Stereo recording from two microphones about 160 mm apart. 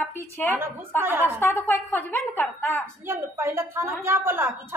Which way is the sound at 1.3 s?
15° left (ahead or behind).